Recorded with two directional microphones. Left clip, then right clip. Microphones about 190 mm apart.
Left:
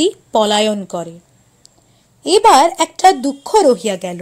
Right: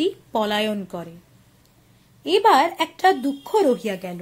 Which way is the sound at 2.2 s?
40° left (ahead or behind).